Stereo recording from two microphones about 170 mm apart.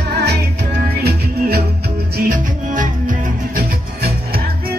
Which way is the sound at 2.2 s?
50° right (ahead or behind).